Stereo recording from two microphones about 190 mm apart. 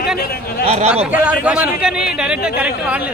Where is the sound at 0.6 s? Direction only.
35° right (ahead or behind).